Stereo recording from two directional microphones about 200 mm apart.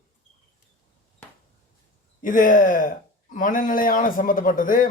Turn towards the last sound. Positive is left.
turn(degrees=45)  # may be behind; listen again after turning